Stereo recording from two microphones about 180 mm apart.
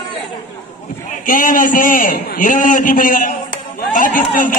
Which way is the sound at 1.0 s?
50° left (ahead or behind).